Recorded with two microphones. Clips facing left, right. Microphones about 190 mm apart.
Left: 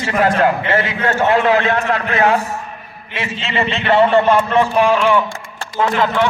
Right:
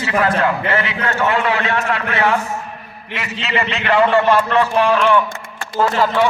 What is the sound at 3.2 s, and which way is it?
A man's voice, 25° left (ahead or behind).